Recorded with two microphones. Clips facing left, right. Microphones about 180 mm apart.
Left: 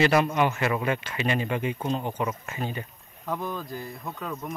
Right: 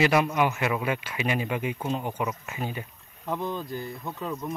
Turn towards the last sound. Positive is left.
turn(degrees=0)  # may be behind; listen again after turning